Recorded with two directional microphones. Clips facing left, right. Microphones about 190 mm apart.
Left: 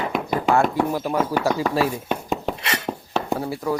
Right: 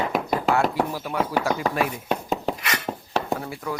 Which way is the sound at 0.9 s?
40° left (ahead or behind).